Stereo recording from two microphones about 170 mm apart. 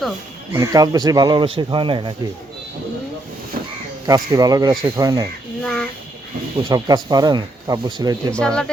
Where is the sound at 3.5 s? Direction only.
55° right (ahead or behind).